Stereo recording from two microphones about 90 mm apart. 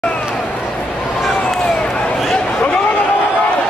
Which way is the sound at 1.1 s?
5° left (ahead or behind).